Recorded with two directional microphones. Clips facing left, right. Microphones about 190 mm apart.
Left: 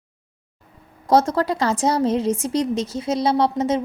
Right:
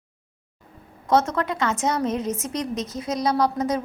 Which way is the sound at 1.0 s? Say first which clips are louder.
Left 4 dB; 35° left (ahead or behind).